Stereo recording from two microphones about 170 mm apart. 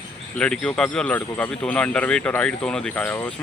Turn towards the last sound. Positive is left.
turn(degrees=10)  # may be behind; listen again after turning